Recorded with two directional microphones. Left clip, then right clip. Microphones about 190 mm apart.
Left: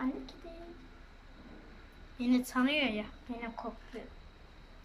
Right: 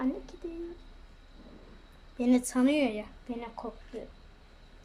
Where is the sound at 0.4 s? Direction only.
35° right (ahead or behind).